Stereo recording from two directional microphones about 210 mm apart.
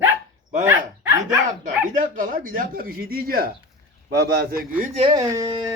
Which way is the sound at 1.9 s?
40° right (ahead or behind).